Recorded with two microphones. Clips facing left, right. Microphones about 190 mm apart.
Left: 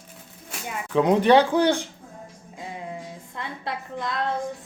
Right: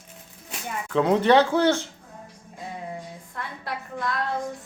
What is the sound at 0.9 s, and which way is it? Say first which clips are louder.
Speech: left 1 dB; 15° left (ahead or behind).